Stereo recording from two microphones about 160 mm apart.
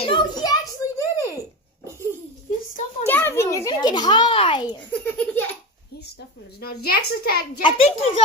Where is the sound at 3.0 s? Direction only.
15° left (ahead or behind).